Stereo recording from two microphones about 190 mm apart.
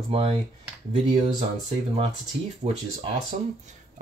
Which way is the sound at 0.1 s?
30° right (ahead or behind).